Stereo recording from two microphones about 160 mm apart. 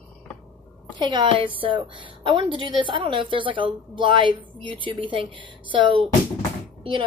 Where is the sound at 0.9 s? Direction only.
30° right (ahead or behind).